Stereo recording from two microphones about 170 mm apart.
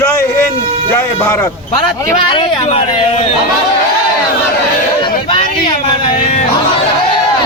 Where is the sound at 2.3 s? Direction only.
30° left (ahead or behind).